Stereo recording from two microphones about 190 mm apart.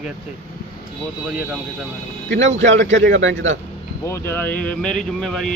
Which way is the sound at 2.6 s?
75° right (ahead or behind).